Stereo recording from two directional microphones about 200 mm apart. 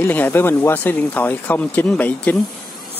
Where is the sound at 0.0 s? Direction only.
10° left (ahead or behind).